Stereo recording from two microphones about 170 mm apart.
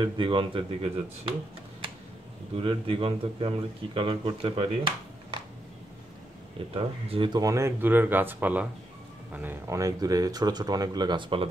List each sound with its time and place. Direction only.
0.0 s speech: 30° right (ahead or behind)
2.5 s speech: 30° right (ahead or behind)
6.7 s speech: 35° right (ahead or behind)
7.3 s speech: 20° right (ahead or behind)